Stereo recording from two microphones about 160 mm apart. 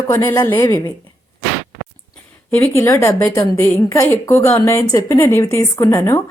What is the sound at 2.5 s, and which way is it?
Speech, 15° left (ahead or behind).